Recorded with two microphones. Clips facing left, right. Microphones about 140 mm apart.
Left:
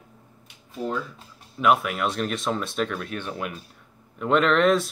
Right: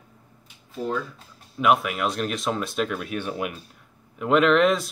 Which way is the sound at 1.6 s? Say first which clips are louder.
Even; centre (ahead or behind).